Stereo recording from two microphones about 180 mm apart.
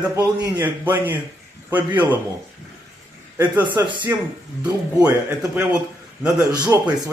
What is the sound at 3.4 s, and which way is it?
Speech, 10° right (ahead or behind).